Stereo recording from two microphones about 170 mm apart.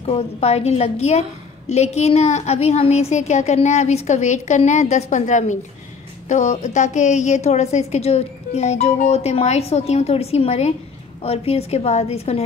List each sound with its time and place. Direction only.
0.0 s a woman's voice: 35° left (ahead or behind)